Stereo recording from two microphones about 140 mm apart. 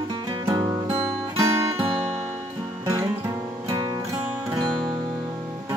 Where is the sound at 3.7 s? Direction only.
25° right (ahead or behind).